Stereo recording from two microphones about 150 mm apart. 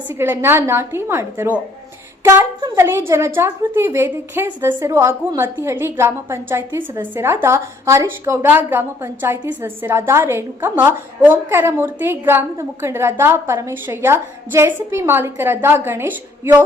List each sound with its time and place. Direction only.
0.1 s a woman's voice: 15° right (ahead or behind)
2.7 s a woman's voice: 15° right (ahead or behind)